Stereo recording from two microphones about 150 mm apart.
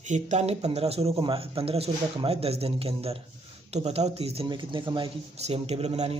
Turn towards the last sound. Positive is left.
turn(degrees=-45)  # may be behind; listen again after turning